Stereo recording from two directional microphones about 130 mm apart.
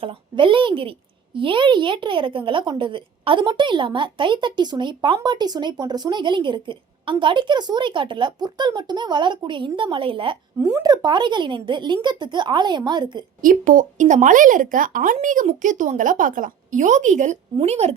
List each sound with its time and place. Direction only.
0.0 s a woman's voice: 40° right (ahead or behind)
10.6 s a woman's voice: 25° right (ahead or behind)
13.4 s speech: 85° right; by 17.9 s 55° right (ahead or behind)